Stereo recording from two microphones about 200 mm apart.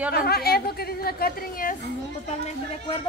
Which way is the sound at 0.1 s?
50° left (ahead or behind).